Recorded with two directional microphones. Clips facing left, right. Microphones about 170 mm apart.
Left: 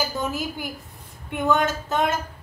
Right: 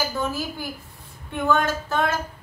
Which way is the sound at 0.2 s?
20° left (ahead or behind).